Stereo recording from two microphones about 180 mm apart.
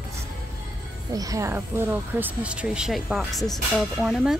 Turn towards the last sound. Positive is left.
turn(degrees=0)  # may be behind; listen again after turning